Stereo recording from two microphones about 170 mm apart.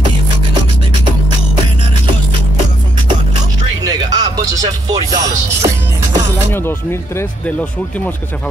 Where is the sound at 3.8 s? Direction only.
25° right (ahead or behind).